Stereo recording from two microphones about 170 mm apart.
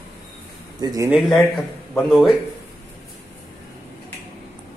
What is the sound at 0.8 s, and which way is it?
Speech, 20° right (ahead or behind).